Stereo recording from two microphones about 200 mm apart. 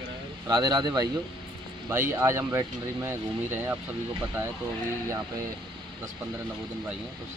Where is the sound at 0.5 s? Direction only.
20° right (ahead or behind).